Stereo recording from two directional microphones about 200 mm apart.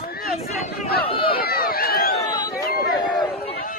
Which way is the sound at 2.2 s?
20° left (ahead or behind).